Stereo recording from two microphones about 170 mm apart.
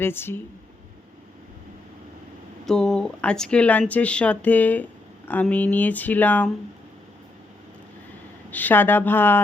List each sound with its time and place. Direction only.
0.0 s speech: 15° left (ahead or behind)
2.6 s speech: 5° left (ahead or behind)
8.4 s speech: 10° left (ahead or behind)